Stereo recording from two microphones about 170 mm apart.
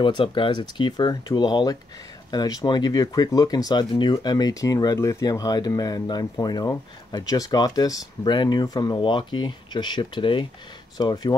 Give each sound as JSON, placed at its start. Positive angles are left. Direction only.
{"t": 0.0, "sound": "speech", "side_deg": 30}